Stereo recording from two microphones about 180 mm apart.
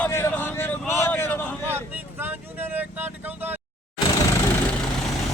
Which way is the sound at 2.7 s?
10° right (ahead or behind).